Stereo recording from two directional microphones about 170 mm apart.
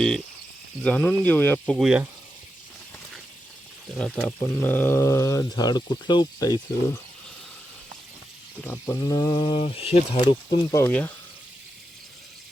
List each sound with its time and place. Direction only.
0.8 s speech: 10° left (ahead or behind)
3.9 s speech: 5° left (ahead or behind); by 6.6 s 25° left (ahead or behind)
8.6 s speech: 15° left (ahead or behind)